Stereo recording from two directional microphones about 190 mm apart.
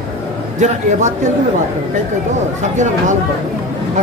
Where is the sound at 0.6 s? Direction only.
40° right (ahead or behind).